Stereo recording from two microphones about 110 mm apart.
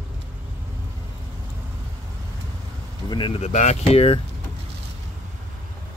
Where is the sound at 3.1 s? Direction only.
50° left (ahead or behind).